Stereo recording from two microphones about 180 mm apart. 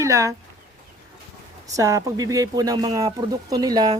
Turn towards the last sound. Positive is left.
turn(degrees=-20)  # may be behind; listen again after turning